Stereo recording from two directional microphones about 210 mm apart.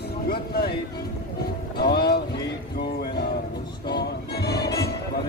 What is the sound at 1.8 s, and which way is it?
Boat, 50° left (ahead or behind).